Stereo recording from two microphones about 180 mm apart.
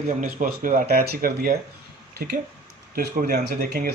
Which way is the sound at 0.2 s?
50° right (ahead or behind).